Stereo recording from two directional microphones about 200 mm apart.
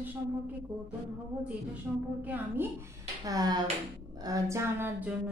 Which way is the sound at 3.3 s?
20° right (ahead or behind).